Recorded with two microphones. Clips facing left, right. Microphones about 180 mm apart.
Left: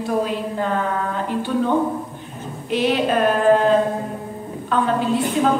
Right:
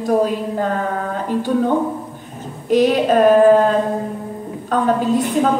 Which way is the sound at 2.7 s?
40° right (ahead or behind).